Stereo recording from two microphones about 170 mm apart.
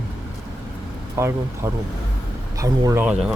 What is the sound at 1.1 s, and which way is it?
Speech, 15° right (ahead or behind).